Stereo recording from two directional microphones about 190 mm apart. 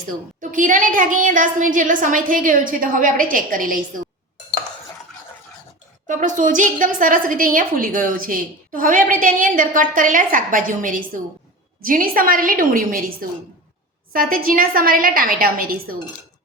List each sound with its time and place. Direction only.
0.5 s a woman's voice: 45° right (ahead or behind)
6.1 s a woman's voice: 40° right (ahead or behind)